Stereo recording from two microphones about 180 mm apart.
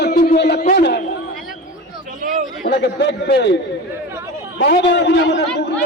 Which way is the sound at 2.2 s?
50° right (ahead or behind).